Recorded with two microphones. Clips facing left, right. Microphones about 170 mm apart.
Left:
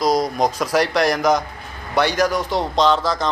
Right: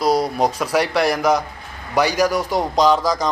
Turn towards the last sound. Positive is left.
turn(degrees=-10)  # may be behind; listen again after turning